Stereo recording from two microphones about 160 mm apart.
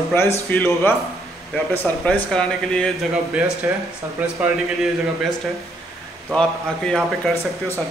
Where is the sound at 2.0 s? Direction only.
5° left (ahead or behind).